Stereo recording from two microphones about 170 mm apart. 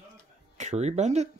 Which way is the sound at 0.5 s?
40° right (ahead or behind).